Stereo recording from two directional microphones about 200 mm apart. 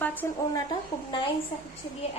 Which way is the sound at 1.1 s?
25° left (ahead or behind).